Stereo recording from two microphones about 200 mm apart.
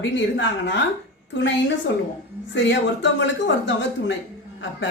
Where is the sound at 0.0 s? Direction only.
65° left (ahead or behind).